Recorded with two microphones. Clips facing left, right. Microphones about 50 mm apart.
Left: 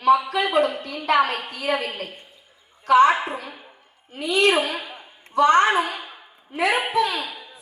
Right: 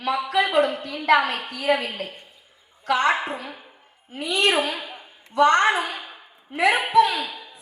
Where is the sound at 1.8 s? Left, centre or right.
Left.